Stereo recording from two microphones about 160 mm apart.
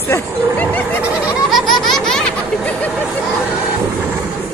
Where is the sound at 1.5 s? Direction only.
Centre (ahead or behind).